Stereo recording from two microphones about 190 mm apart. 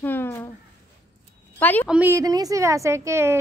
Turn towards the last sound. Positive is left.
turn(degrees=-15)  # may be behind; listen again after turning